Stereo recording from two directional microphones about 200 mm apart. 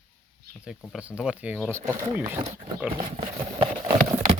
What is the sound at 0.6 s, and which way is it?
Speech, centre (ahead or behind).